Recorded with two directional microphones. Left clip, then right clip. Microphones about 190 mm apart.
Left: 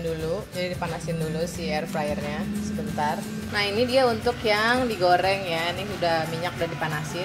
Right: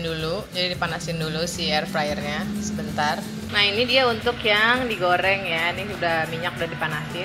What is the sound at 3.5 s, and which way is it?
A woman's voice, 25° left (ahead or behind).